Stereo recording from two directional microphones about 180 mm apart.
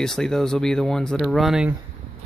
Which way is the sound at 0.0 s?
5° left (ahead or behind).